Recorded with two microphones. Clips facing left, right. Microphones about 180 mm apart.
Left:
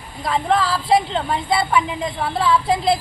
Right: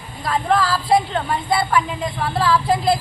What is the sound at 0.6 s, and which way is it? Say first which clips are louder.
Speech: even; 20° left (ahead or behind).